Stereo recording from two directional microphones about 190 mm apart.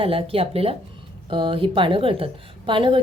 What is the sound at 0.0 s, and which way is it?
Speech, 30° right (ahead or behind).